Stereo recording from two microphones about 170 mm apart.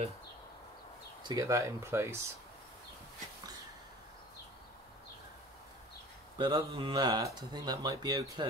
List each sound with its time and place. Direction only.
1.2 s speech: 20° right (ahead or behind)
6.3 s speech: 25° right (ahead or behind)